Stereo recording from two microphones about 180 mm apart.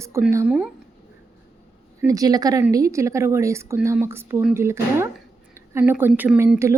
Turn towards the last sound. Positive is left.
turn(degrees=-15)  # may be behind; listen again after turning